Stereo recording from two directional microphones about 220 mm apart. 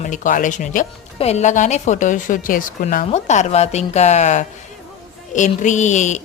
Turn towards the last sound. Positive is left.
turn(degrees=30)  # may be behind; listen again after turning